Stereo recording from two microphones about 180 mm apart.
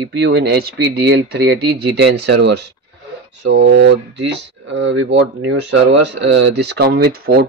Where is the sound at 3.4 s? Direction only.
80° right.